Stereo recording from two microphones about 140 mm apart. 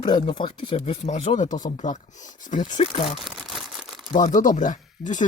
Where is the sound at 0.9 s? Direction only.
50° left (ahead or behind).